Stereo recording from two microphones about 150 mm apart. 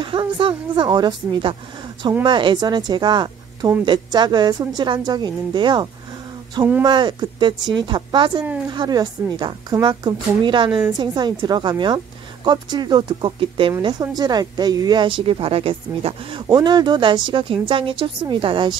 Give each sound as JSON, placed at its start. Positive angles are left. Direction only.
{"t": 0.0, "sound": "a woman's voice", "side_deg": -35}